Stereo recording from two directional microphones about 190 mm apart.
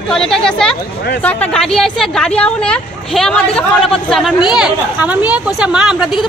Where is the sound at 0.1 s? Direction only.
Centre (ahead or behind).